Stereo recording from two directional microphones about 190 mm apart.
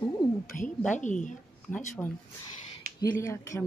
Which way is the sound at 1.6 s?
10° left (ahead or behind).